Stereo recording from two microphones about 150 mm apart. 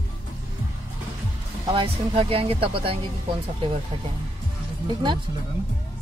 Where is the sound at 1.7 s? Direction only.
40° right (ahead or behind).